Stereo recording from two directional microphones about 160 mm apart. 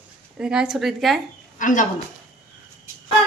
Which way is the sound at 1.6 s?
55° left (ahead or behind).